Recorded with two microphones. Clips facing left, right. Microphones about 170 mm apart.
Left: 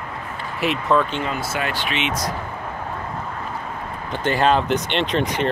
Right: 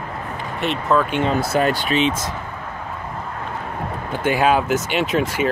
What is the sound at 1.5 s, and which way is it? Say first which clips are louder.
Speech: right 6 dB; 40° right (ahead or behind).